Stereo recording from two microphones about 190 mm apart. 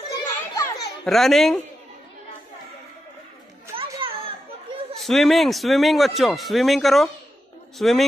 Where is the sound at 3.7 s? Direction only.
30° right (ahead or behind).